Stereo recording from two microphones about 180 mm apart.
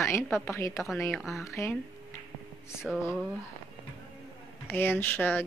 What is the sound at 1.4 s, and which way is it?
Speech, 15° left (ahead or behind).